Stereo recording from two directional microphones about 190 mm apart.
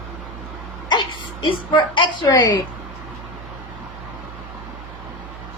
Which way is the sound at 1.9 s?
25° left (ahead or behind).